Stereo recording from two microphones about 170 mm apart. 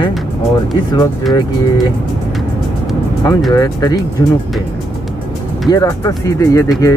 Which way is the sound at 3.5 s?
20° left (ahead or behind).